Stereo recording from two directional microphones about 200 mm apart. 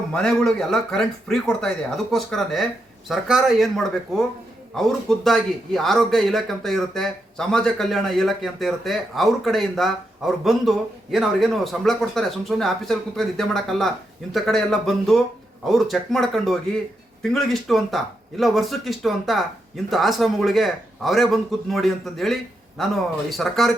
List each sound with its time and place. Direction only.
0.1 s speech: 5° left (ahead or behind)